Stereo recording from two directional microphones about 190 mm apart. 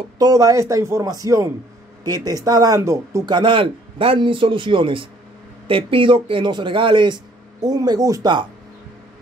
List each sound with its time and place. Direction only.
0.2 s a man's voice: 20° right (ahead or behind)